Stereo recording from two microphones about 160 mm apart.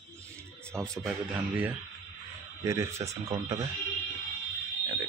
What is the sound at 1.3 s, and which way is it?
Speech, 10° right (ahead or behind).